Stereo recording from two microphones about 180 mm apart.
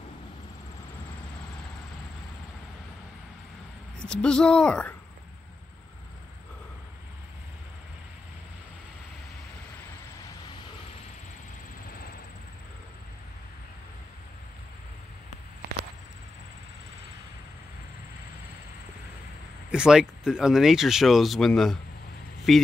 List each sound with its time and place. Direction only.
4.0 s speech: 5° left (ahead or behind)
19.7 s speech: 5° right (ahead or behind)